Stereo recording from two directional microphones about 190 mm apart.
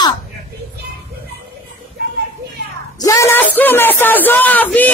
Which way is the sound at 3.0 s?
15° left (ahead or behind).